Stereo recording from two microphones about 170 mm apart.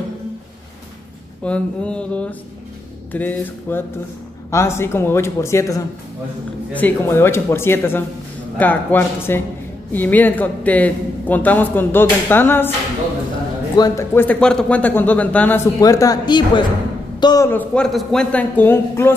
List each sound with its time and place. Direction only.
1.4 s a man's voice: 5° left (ahead or behind)
13.7 s a man's voice: 20° left (ahead or behind)
15.8 s a woman's voice: 20° left (ahead or behind)
17.5 s a man's voice: 10° left (ahead or behind)